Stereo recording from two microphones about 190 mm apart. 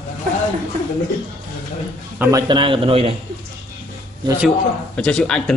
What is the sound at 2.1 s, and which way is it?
Speech, 10° right (ahead or behind).